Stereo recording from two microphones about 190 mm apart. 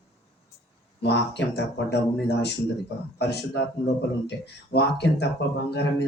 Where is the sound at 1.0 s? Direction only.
60° left (ahead or behind).